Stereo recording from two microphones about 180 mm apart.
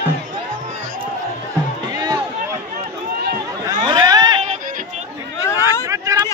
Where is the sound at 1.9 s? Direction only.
20° right (ahead or behind).